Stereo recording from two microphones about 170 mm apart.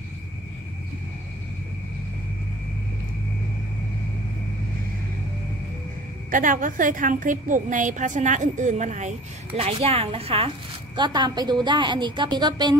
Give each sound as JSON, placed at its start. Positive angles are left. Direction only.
{"t": 6.3, "sound": "a woman's voice", "side_deg": -50}